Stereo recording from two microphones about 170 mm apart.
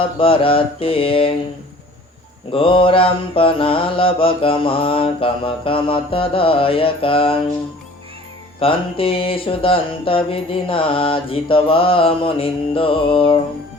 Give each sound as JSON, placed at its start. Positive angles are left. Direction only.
{"t": 0.0, "sound": "mantra", "side_deg": 30}
{"t": 2.5, "sound": "mantra", "side_deg": 30}
{"t": 8.5, "sound": "mantra", "side_deg": 30}